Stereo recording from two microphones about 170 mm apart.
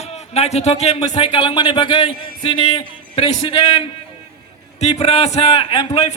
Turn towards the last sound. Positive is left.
turn(degrees=35)  # may be behind; listen again after turning